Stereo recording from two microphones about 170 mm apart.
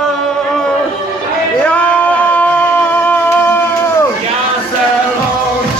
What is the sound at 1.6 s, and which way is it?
Music, 10° left (ahead or behind).